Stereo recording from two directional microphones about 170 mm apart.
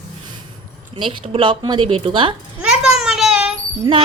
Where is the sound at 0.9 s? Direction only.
30° right (ahead or behind).